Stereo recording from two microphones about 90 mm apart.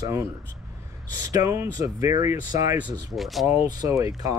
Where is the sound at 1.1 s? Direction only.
40° right (ahead or behind).